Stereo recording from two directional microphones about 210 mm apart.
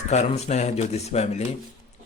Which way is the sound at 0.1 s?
30° left (ahead or behind).